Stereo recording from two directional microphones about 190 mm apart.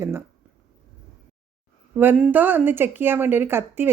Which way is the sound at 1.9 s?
10° right (ahead or behind).